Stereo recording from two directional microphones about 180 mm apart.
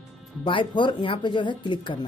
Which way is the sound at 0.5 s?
25° left (ahead or behind).